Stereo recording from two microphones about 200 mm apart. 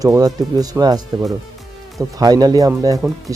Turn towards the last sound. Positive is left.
turn(degrees=0)  # may be behind; listen again after turning